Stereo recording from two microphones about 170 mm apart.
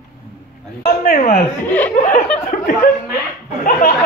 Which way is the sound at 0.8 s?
55° left (ahead or behind).